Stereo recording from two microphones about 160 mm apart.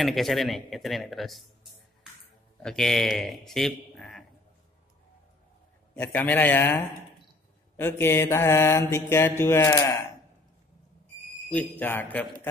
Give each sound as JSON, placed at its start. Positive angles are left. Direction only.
{"t": 0.0, "sound": "speech", "side_deg": 0}
{"t": 2.6, "sound": "speech", "side_deg": 5}
{"t": 5.9, "sound": "a man's voice", "side_deg": 10}
{"t": 11.5, "sound": "a man's voice", "side_deg": 10}